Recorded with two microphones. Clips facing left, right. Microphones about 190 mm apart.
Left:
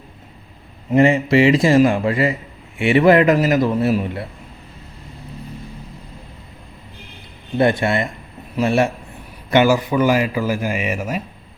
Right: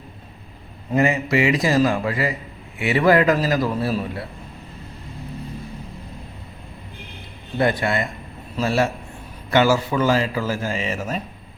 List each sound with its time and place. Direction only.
0.9 s a man's voice: 30° left (ahead or behind)
7.6 s a man's voice: 25° left (ahead or behind)